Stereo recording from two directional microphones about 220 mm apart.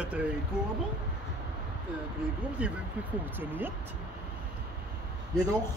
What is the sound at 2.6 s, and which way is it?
Speech, 5° right (ahead or behind).